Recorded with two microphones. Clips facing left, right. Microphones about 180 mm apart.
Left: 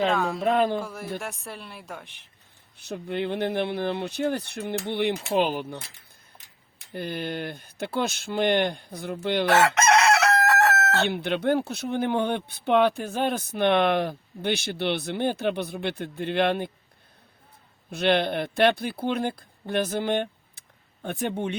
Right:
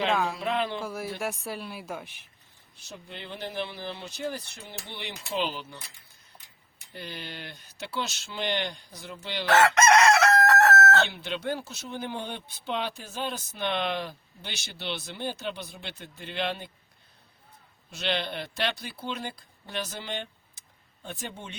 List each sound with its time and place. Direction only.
0.1 s speech: centre (ahead or behind)
0.3 s speech: 45° left (ahead or behind)
0.8 s speech: centre (ahead or behind)
2.7 s speech: 60° left (ahead or behind)
6.9 s speech: 50° left (ahead or behind)
10.2 s chicken: 15° left (ahead or behind)
11.1 s speech: 60° left (ahead or behind)
17.9 s speech: 55° left (ahead or behind)